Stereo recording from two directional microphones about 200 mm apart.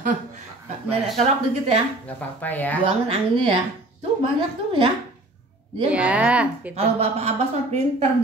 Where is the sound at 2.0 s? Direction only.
5° left (ahead or behind).